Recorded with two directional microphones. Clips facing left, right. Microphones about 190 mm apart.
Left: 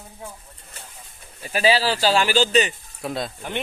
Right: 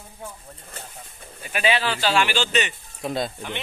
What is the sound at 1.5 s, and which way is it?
Speech, 35° left (ahead or behind).